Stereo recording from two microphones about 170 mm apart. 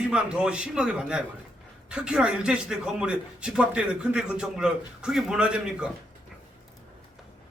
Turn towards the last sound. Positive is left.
turn(degrees=-5)  # may be behind; listen again after turning